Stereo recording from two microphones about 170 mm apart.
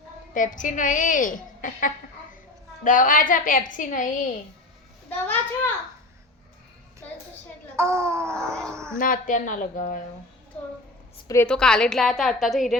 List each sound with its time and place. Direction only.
0.3 s a woman's voice: 50° left (ahead or behind)
5.0 s a child's voice: 10° left (ahead or behind)
7.8 s a sound: 15° right (ahead or behind)
9.0 s a woman's voice: 50° left (ahead or behind)
11.4 s a woman's voice: 5° left (ahead or behind)